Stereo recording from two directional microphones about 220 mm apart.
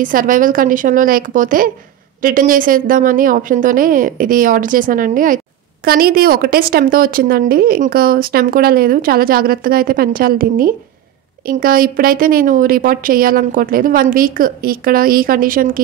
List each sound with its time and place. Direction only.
0.0 s a woman's voice: 40° right (ahead or behind)